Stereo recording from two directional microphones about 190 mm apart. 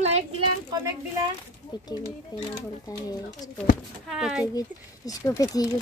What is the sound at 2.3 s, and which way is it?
Speech, 20° left (ahead or behind).